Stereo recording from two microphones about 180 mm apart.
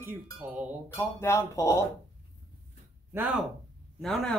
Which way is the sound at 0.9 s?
15° left (ahead or behind).